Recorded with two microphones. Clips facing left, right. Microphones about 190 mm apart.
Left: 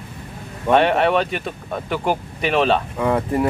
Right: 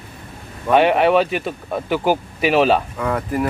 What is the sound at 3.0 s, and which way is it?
Speech, 25° left (ahead or behind).